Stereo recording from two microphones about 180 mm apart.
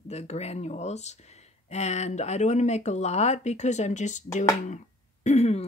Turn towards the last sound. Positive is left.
turn(degrees=35)  # may be behind; listen again after turning